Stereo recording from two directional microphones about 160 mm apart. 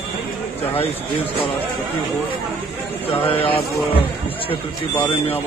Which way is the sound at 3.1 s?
35° left (ahead or behind).